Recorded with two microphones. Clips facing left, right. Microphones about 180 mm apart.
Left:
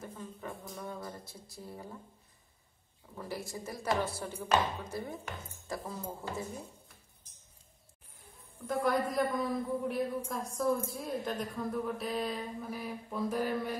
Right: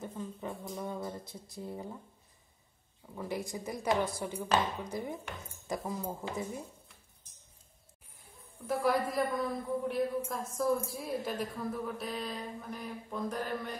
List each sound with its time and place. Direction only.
0.0 s speech: 20° right (ahead or behind)
3.2 s speech: 15° right (ahead or behind)
8.6 s a man's voice: 5° right (ahead or behind)